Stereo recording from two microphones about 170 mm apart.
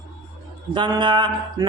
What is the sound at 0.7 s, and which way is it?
Speech, 25° right (ahead or behind).